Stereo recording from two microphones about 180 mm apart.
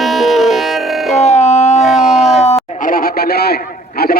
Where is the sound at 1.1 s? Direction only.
40° left (ahead or behind).